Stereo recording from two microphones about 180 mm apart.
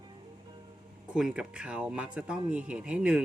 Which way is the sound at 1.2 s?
5° right (ahead or behind).